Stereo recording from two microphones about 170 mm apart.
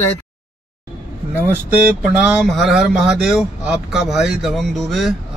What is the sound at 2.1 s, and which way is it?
Speech, 5° right (ahead or behind).